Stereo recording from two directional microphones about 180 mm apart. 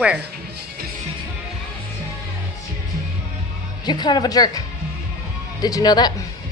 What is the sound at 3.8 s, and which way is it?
Speech, 25° left (ahead or behind).